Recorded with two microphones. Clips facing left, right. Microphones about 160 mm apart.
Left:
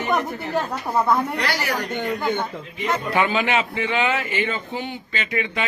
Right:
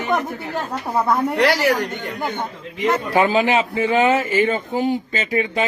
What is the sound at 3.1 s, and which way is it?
A man's voice, 40° right (ahead or behind).